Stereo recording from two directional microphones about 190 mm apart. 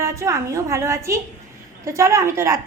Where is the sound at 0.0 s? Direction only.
15° right (ahead or behind).